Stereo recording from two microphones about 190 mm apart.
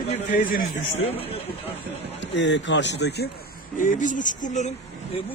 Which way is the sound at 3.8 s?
45° left (ahead or behind).